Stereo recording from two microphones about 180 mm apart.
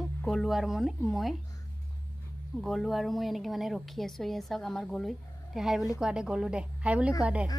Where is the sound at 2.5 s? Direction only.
Centre (ahead or behind).